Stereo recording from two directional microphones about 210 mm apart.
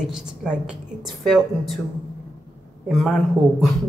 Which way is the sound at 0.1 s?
5° right (ahead or behind).